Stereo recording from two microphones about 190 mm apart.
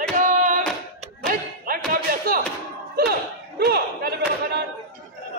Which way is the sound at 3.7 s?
60° right (ahead or behind).